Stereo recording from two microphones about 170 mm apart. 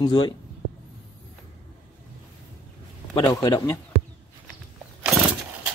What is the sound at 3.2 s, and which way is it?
Speech, 20° left (ahead or behind).